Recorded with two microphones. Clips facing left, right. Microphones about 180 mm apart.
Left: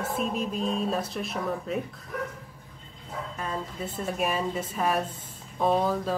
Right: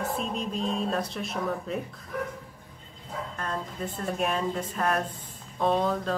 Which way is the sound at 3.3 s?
5° left (ahead or behind).